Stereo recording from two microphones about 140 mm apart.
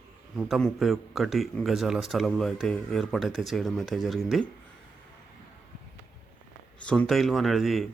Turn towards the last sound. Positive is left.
turn(degrees=0)  # may be behind; listen again after turning